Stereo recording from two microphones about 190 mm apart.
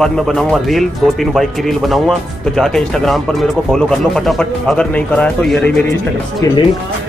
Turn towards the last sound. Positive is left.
turn(degrees=20)  # may be behind; listen again after turning